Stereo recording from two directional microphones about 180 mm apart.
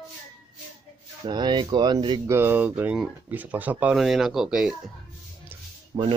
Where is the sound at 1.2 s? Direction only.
25° right (ahead or behind).